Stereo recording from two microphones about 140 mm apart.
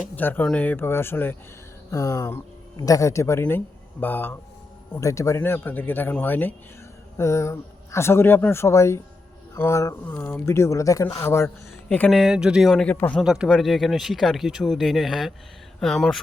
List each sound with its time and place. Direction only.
0.2 s speech: 15° left (ahead or behind)
11.4 s speech: 10° left (ahead or behind)
12.1 s speech: 5° right (ahead or behind)
13.2 s speech: 5° right (ahead or behind)